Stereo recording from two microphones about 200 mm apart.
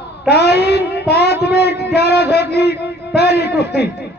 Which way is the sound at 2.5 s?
55° left (ahead or behind).